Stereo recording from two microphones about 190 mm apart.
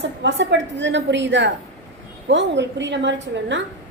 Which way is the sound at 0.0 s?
70° right (ahead or behind).